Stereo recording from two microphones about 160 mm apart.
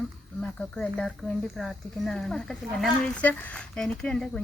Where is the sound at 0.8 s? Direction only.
5° left (ahead or behind).